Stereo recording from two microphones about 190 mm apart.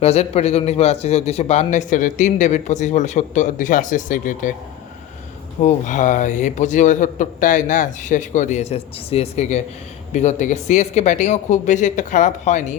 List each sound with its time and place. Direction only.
0.0 s a man's voice: 35° left (ahead or behind)
5.6 s a man's voice: 40° left (ahead or behind)